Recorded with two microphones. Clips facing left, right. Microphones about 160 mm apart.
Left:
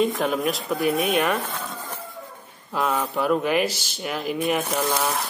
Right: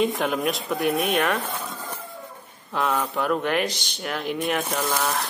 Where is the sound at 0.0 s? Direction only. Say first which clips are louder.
Left 1 dB; centre (ahead or behind).